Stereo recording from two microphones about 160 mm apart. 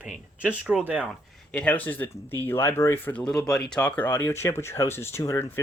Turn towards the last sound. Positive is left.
turn(degrees=15)  # may be behind; listen again after turning